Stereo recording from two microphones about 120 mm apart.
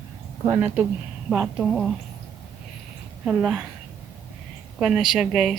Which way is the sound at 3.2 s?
10° right (ahead or behind).